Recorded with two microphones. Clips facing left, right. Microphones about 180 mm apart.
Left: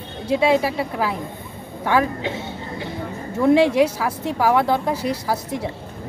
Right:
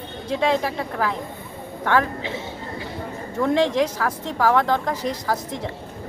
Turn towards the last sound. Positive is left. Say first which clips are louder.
# left 2 dB
turn(degrees=10)  # may be behind; listen again after turning